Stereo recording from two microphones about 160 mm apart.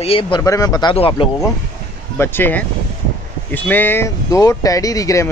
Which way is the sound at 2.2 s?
15° left (ahead or behind).